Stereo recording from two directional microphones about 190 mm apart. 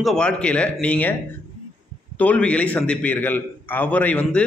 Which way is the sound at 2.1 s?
5° left (ahead or behind).